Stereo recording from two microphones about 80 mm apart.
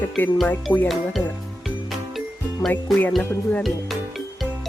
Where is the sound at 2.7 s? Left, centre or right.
Left.